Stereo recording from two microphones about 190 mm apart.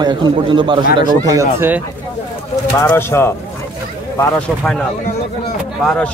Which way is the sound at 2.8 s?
10° left (ahead or behind).